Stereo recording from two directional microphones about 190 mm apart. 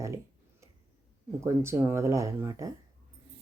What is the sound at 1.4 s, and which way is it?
Speech, 15° right (ahead or behind).